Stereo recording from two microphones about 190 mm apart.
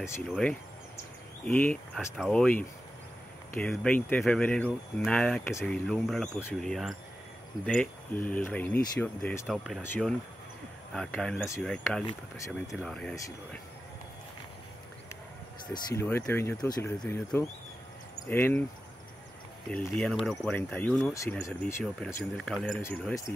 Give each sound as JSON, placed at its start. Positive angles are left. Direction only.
{"t": 0.3, "sound": "speech", "side_deg": 5}
{"t": 3.5, "sound": "speech", "side_deg": 10}
{"t": 9.5, "sound": "speech", "side_deg": 0}
{"t": 15.7, "sound": "speech", "side_deg": 15}
{"t": 19.7, "sound": "speech", "side_deg": 5}
{"t": 21.1, "sound": "speech", "side_deg": 15}
{"t": 21.8, "sound": "speech", "side_deg": 0}
{"t": 22.8, "sound": "speech", "side_deg": 15}